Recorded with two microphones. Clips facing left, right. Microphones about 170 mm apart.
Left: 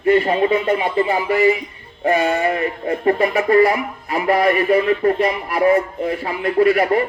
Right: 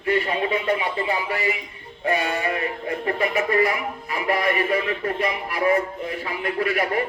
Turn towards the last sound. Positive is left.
turn(degrees=40)  # may be behind; listen again after turning